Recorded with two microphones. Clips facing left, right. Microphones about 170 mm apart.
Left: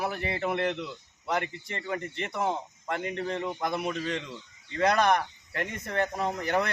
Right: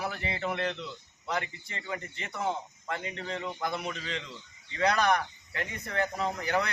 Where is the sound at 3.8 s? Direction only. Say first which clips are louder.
Left 6 dB; 50° left (ahead or behind).